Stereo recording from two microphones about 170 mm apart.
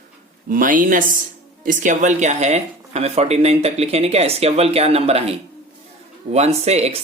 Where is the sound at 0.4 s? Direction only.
55° right (ahead or behind).